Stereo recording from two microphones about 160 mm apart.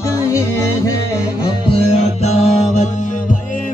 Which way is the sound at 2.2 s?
40° left (ahead or behind).